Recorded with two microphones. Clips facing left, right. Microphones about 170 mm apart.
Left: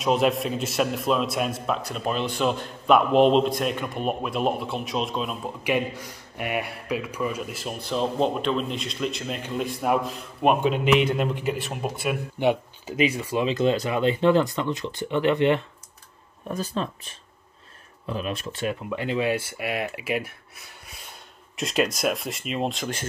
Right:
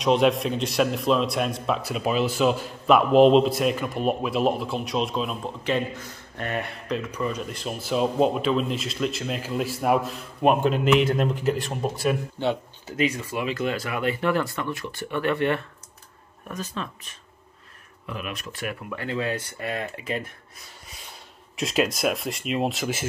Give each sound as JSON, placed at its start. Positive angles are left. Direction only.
{"t": 0.0, "sound": "a man's voice", "side_deg": 0}
{"t": 16.4, "sound": "a man's voice", "side_deg": 30}